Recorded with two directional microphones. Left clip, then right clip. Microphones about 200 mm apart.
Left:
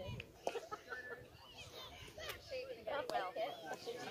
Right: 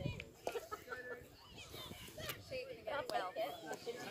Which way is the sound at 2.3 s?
45° right (ahead or behind).